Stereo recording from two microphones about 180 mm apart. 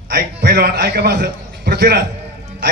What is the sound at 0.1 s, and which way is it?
A man's voice, 60° right (ahead or behind).